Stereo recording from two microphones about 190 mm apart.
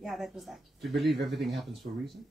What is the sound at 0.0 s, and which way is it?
Speech, centre (ahead or behind).